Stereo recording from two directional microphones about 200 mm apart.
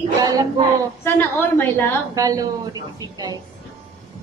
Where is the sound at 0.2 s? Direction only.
20° right (ahead or behind).